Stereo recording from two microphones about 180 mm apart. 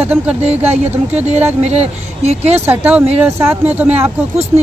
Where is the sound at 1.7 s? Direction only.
35° right (ahead or behind).